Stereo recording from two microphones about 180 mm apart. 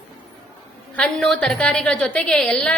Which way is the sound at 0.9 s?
5° left (ahead or behind).